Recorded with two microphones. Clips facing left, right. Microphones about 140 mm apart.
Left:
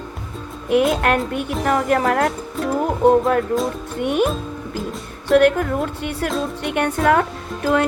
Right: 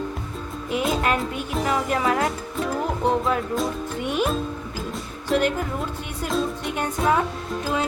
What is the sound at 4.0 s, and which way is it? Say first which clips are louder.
Speech: left 7 dB; 55° left (ahead or behind).